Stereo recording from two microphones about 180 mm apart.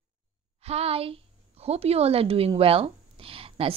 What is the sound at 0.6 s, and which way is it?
A woman's voice, 35° right (ahead or behind).